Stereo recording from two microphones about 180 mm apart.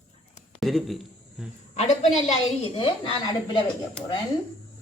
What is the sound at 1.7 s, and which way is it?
A woman's voice, 35° left (ahead or behind).